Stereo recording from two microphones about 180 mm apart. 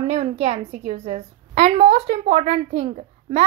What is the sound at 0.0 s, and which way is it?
A woman's voice, 35° right (ahead or behind).